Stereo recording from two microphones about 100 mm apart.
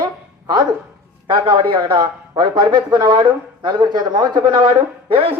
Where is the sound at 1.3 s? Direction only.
60° right (ahead or behind).